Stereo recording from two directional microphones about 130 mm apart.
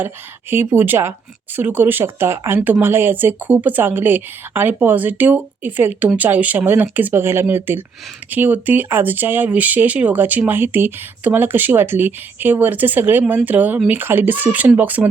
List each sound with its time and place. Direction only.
0.5 s speech: 15° right (ahead or behind)